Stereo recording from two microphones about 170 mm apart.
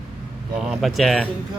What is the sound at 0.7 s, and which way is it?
Speech, centre (ahead or behind).